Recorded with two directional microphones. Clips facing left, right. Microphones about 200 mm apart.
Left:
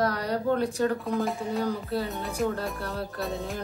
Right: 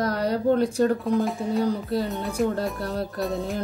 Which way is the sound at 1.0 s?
Centre (ahead or behind).